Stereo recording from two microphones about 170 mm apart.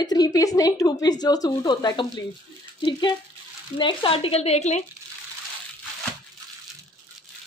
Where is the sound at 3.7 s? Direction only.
30° left (ahead or behind).